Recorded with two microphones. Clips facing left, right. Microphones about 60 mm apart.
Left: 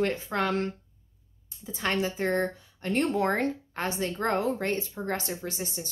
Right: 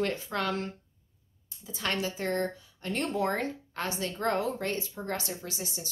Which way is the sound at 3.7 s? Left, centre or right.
Left.